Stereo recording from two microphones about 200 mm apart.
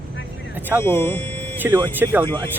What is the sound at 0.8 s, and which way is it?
Speech, 10° left (ahead or behind).